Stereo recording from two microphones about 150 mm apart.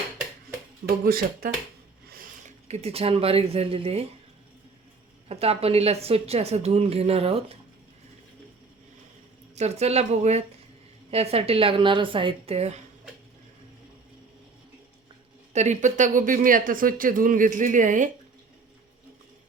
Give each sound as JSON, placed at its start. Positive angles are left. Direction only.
{"t": 0.9, "sound": "speech", "side_deg": -75}
{"t": 2.6, "sound": "a woman's voice", "side_deg": -45}
{"t": 5.3, "sound": "speech", "side_deg": -40}
{"t": 9.6, "sound": "a woman's voice", "side_deg": -45}
{"t": 15.5, "sound": "speech", "side_deg": -50}